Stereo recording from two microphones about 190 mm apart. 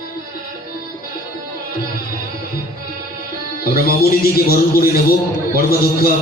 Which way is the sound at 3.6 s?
55° left (ahead or behind).